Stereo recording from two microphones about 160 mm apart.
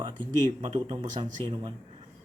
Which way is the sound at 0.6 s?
30° right (ahead or behind).